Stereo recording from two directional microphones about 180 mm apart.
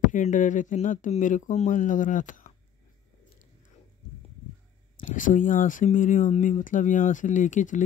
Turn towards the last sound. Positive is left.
turn(degrees=45)  # may be behind; listen again after turning